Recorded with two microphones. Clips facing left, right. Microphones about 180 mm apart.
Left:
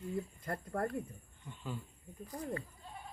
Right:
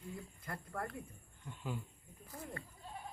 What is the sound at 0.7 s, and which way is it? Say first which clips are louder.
Speech: left 7 dB; 45° left (ahead or behind).